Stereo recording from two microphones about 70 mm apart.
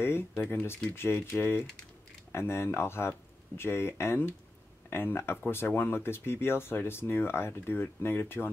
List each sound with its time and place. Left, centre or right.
0.0 s speech: left